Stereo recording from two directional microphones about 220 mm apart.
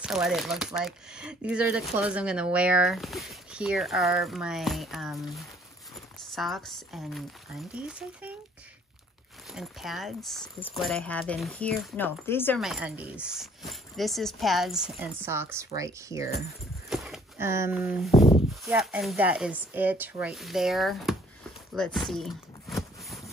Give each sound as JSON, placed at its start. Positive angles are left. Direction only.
{"t": 0.0, "sound": "speech", "side_deg": 0}
{"t": 9.5, "sound": "speech", "side_deg": 0}
{"t": 12.5, "sound": "speech", "side_deg": 0}
{"t": 16.9, "sound": "speech", "side_deg": 0}
{"t": 18.1, "sound": "speech", "side_deg": 25}
{"t": 18.7, "sound": "speech", "side_deg": -5}
{"t": 21.7, "sound": "a sound", "side_deg": 0}